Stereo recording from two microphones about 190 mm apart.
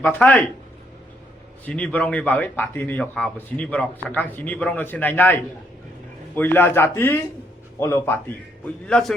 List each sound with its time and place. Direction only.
0.0 s speech: 10° left (ahead or behind)
1.6 s a man's voice: 10° left (ahead or behind)